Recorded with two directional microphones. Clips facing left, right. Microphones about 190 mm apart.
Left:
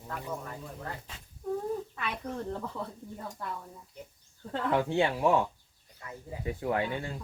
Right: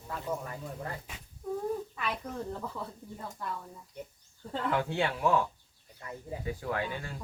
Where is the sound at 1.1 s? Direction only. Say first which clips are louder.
Right 1 dB; 10° right (ahead or behind).